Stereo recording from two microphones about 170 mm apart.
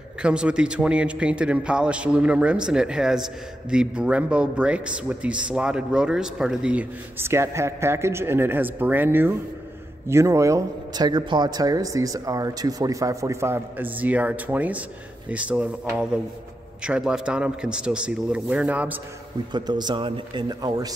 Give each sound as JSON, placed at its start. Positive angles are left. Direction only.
{"t": 0.2, "sound": "a man's voice", "side_deg": -5}
{"t": 19.5, "sound": "a man's voice", "side_deg": -25}